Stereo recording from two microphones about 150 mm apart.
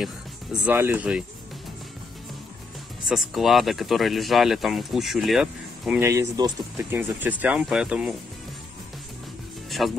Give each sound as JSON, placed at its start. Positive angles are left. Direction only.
{"t": 0.0, "sound": "music", "side_deg": -5}
{"t": 0.7, "sound": "speech", "side_deg": -10}
{"t": 3.1, "sound": "speech", "side_deg": 0}
{"t": 5.9, "sound": "speech", "side_deg": -20}
{"t": 9.7, "sound": "music", "side_deg": 0}